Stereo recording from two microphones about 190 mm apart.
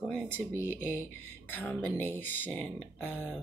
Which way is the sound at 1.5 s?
10° left (ahead or behind).